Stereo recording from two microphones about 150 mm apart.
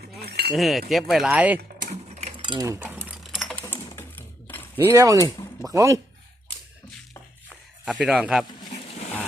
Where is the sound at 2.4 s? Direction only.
30° right (ahead or behind).